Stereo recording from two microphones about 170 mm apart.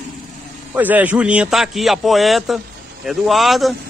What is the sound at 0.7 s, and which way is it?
A man's voice, 10° right (ahead or behind).